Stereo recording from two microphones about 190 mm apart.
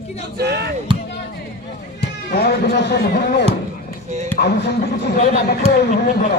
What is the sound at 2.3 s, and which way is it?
A man's voice, 55° left (ahead or behind).